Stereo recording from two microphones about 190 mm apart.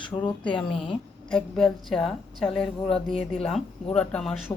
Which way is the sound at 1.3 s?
5° left (ahead or behind).